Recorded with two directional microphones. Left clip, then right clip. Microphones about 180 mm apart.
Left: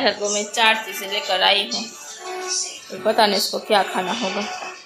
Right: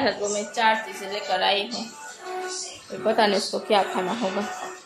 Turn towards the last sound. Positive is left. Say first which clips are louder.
# left 3 dB
turn(degrees=5)  # may be behind; listen again after turning